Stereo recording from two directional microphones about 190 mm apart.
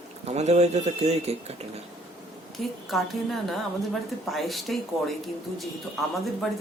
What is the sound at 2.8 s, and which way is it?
Speech, centre (ahead or behind).